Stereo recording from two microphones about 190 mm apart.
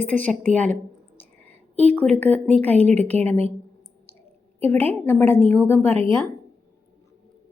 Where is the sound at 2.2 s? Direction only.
10° left (ahead or behind).